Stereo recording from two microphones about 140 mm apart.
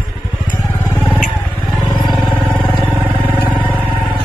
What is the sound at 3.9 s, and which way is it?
Vehicle, 35° left (ahead or behind).